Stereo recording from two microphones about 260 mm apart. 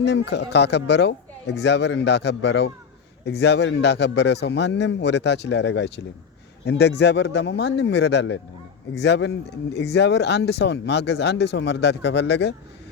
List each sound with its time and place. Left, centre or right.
0.0 s speech: left